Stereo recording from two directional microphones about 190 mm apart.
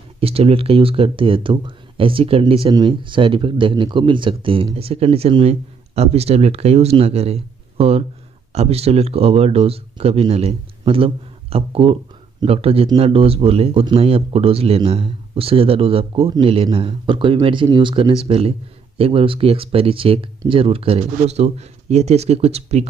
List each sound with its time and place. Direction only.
0.2 s speech: 30° right (ahead or behind)